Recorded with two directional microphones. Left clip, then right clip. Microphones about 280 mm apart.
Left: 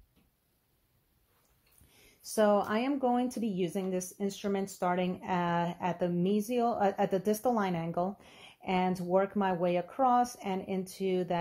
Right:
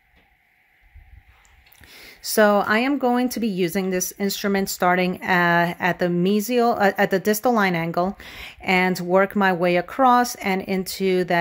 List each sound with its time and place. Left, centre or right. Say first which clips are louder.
2.3 s speech: right 10 dB; right